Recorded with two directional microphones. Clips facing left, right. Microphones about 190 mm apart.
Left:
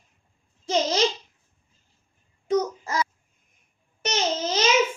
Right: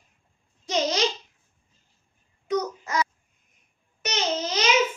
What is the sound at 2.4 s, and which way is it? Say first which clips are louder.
Babbling: left 3 dB; 30° left (ahead or behind).